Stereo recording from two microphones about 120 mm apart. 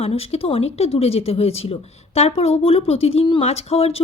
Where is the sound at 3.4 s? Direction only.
60° left (ahead or behind).